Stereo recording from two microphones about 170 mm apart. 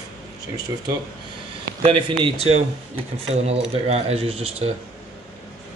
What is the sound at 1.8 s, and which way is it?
Speech, 35° right (ahead or behind).